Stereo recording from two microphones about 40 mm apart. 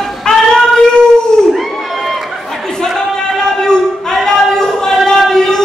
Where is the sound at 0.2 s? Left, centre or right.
Centre.